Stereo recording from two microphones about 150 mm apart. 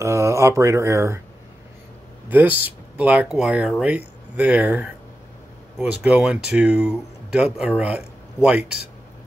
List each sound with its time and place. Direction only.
0.0 s speech: 20° right (ahead or behind)
2.2 s speech: 10° right (ahead or behind)